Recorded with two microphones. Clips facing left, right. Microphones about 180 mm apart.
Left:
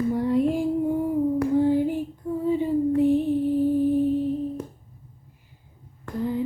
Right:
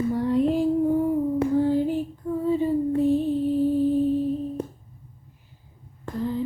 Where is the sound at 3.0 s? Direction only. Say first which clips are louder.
Left 1 dB; 15° left (ahead or behind).